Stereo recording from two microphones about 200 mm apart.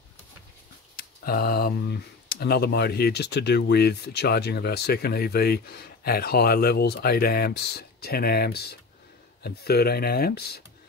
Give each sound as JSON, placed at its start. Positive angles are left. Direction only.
{"t": 0.9, "sound": "speech", "side_deg": 50}